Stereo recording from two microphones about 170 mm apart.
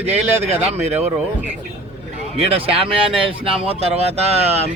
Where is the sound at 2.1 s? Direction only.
35° right (ahead or behind).